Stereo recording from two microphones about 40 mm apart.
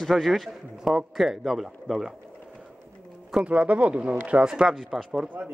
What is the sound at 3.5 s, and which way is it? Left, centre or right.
Speech, right.